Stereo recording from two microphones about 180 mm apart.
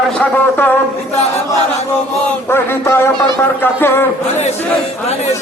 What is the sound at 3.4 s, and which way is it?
Music, 10° left (ahead or behind).